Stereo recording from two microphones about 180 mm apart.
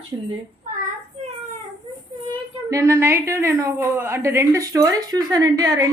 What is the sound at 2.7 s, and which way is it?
A woman's voice, 15° right (ahead or behind).